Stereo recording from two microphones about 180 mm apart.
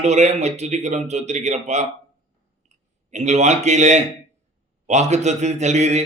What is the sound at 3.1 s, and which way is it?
A man's voice, 40° right (ahead or behind).